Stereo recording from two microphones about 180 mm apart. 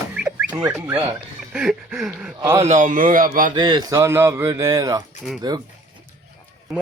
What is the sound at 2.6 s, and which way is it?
Speech, 40° right (ahead or behind).